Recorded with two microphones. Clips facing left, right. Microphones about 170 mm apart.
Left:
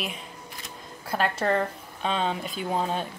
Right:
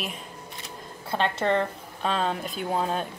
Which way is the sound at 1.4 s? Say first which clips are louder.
Right 1 dB; centre (ahead or behind).